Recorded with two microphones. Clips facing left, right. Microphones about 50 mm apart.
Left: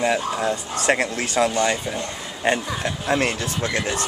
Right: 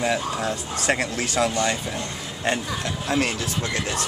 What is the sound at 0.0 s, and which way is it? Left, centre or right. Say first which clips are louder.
Speech: left 3 dB; centre.